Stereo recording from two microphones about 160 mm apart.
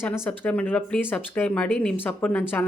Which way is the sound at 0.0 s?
15° left (ahead or behind).